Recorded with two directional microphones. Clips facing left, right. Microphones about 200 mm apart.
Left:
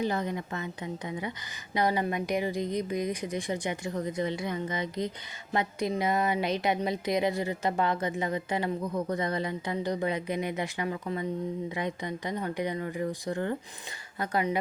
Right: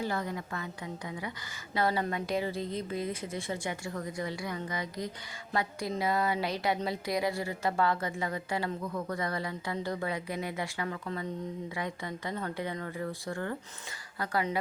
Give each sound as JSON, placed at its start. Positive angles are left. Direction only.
{"t": 0.0, "sound": "a woman's voice", "side_deg": 20}